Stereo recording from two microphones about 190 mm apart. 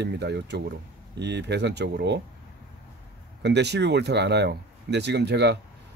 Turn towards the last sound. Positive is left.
turn(degrees=-60)  # may be behind; listen again after turning